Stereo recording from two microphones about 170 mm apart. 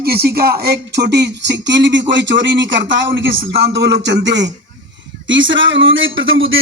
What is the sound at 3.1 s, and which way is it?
A man's voice, 80° right.